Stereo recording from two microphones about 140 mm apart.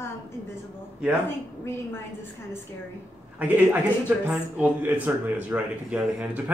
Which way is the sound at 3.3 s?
10° right (ahead or behind).